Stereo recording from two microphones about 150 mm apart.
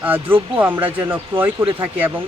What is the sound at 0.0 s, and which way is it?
Speech, 15° right (ahead or behind).